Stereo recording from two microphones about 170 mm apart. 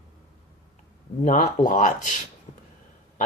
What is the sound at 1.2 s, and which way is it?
Speech, 50° left (ahead or behind).